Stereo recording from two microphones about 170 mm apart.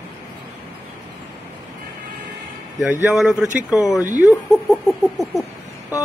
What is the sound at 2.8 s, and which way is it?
A man's voice, 5° right (ahead or behind).